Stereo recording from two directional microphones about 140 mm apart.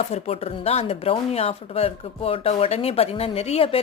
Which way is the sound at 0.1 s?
50° left (ahead or behind).